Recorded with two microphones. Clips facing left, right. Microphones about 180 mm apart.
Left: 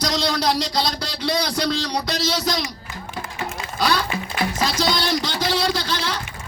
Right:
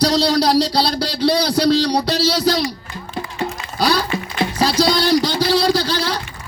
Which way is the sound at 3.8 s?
35° right (ahead or behind).